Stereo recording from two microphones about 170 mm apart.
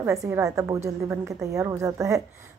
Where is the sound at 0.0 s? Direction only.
15° right (ahead or behind).